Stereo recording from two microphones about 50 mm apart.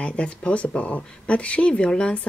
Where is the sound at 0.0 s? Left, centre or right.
Left.